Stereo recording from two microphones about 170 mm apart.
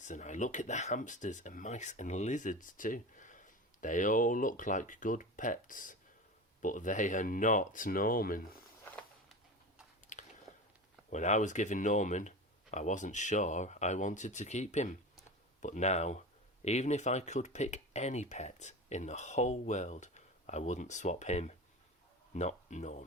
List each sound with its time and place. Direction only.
0.0 s speech: 45° left (ahead or behind)
10.1 s biting: 45° left (ahead or behind)
11.1 s speech: 45° left (ahead or behind)